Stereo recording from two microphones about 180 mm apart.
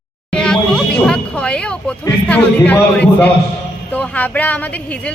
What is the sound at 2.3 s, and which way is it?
Speech, 10° left (ahead or behind).